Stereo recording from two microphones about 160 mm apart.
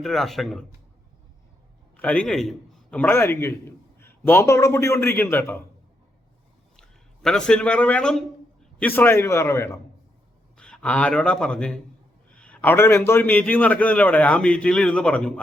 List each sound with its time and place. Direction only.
0.0 s speech: centre (ahead or behind)
2.0 s a man's voice: 5° left (ahead or behind)
6.7 s a man's voice: 5° left (ahead or behind)
10.6 s a man's voice: 5° left (ahead or behind)